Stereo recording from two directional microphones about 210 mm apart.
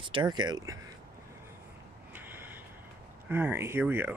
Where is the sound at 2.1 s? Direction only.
10° right (ahead or behind).